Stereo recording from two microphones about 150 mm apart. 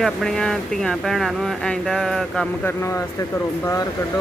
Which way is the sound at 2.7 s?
15° left (ahead or behind).